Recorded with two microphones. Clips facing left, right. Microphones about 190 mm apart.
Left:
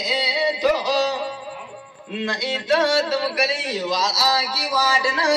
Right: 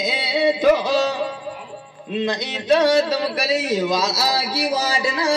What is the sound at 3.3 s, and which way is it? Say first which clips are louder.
A man's voice: right 4 dB; 40° right (ahead or behind).